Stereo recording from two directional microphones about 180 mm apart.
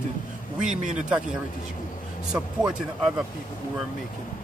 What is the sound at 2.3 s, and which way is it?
Speech, 5° right (ahead or behind).